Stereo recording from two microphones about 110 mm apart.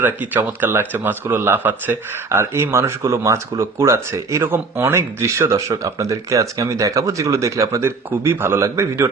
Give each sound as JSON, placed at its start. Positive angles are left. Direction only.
{"t": 0.0, "sound": "speech", "side_deg": -15}